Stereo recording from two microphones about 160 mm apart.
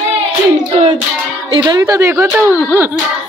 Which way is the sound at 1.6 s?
20° right (ahead or behind).